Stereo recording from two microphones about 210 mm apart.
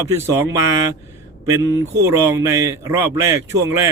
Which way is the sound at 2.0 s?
15° right (ahead or behind).